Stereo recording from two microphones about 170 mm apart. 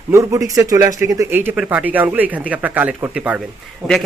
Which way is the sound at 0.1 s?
20° right (ahead or behind).